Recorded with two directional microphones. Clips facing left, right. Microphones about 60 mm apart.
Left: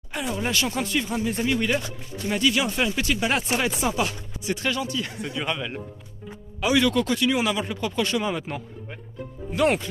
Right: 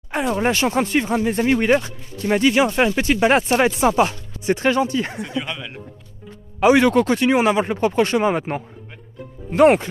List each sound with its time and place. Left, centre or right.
0.1 s speech: right
5.2 s speech: centre
6.6 s speech: right